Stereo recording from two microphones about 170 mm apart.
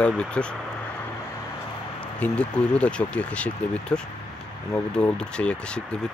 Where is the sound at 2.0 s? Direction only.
5° left (ahead or behind).